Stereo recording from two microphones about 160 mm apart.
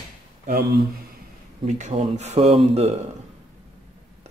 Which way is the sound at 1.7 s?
50° right (ahead or behind).